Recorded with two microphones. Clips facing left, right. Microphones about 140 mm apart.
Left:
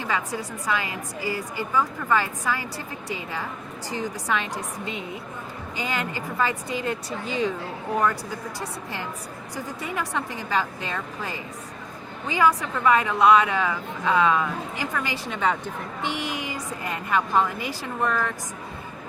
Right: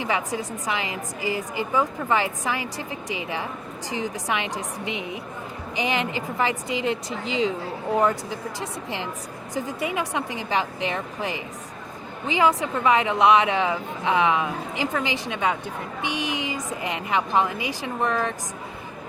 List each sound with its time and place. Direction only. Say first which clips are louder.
0.0 s a woman's voice: right 2 dB; 15° right (ahead or behind)
9.6 s a woman's voice: right 4 dB; 15° right (ahead or behind)